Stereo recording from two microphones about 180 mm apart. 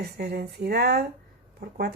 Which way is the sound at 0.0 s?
65° right (ahead or behind).